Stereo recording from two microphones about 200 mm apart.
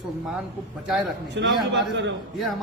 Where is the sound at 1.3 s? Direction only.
65° right (ahead or behind).